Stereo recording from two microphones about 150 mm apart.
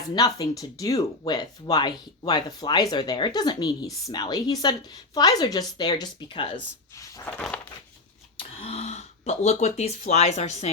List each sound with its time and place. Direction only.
0.1 s speech: 25° left (ahead or behind)
7.0 s a sound: 15° left (ahead or behind)
8.4 s speech: 40° left (ahead or behind)